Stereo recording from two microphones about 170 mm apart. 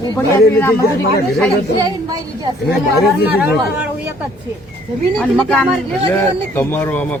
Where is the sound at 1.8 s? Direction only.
20° right (ahead or behind).